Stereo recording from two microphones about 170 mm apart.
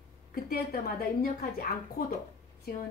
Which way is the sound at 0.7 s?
60° left (ahead or behind).